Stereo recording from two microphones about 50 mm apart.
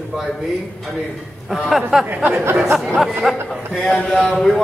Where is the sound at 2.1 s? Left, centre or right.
Right.